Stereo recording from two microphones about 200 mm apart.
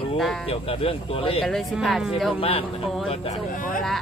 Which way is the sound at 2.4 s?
30° left (ahead or behind).